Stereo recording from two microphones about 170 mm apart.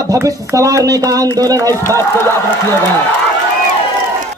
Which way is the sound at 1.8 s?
15° left (ahead or behind).